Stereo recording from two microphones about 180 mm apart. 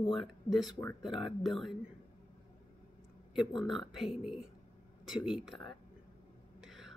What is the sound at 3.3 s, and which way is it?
Speech, centre (ahead or behind).